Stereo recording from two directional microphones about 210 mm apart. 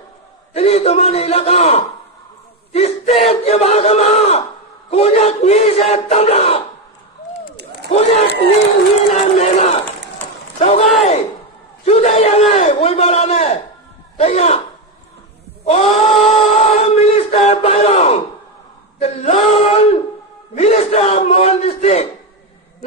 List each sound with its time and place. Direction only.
0.5 s a man's voice: 30° left (ahead or behind)
4.9 s battle cry: 30° left (ahead or behind)
7.9 s a man's voice: 30° left (ahead or behind)
9.1 s crowd: 30° left (ahead or behind)
10.6 s a man's voice: 30° left (ahead or behind)
15.6 s a man's voice: 30° left (ahead or behind)
16.5 s a sound: 30° left (ahead or behind)
18.9 s a man's voice: 30° left (ahead or behind)
20.5 s battle cry: 30° left (ahead or behind)